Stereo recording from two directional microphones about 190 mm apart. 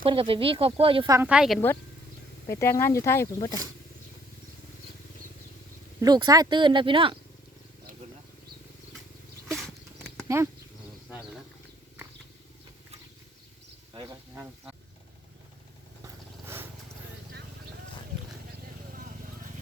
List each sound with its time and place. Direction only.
0.0 s speech: 25° right (ahead or behind)
1.3 s a woman's voice: 5° right (ahead or behind)
2.5 s speech: 15° left (ahead or behind)
6.0 s speech: 20° right (ahead or behind)
10.2 s speech: 15° right (ahead or behind)
14.3 s a sound: 5° right (ahead or behind)